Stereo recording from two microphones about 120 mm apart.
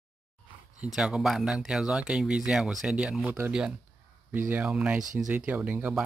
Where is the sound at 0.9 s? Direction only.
5° right (ahead or behind).